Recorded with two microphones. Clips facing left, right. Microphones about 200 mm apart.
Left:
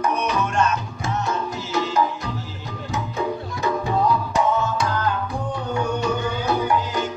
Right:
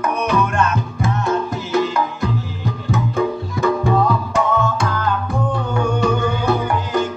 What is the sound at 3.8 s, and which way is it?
Music, 50° right (ahead or behind).